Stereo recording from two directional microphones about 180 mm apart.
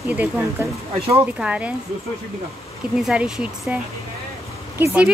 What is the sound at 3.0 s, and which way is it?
Speech, 5° right (ahead or behind).